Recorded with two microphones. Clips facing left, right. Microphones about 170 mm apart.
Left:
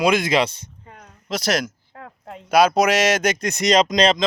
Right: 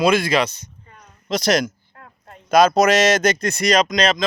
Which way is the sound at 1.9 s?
85° left.